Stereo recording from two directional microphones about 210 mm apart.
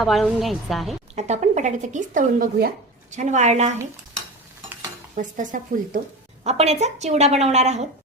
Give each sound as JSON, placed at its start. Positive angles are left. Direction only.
{"t": 0.0, "sound": "a woman's voice", "side_deg": 0}
{"t": 1.1, "sound": "speech", "side_deg": -35}
{"t": 5.1, "sound": "speech", "side_deg": -40}